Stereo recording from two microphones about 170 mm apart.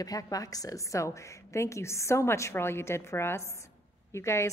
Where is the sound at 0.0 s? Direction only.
20° left (ahead or behind).